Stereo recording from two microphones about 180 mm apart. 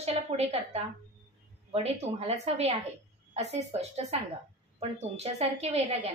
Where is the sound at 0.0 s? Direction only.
35° right (ahead or behind).